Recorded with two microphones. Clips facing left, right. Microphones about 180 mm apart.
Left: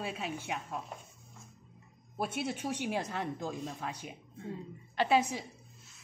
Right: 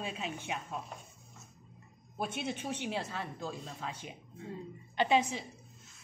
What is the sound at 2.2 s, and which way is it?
Speech, 10° left (ahead or behind).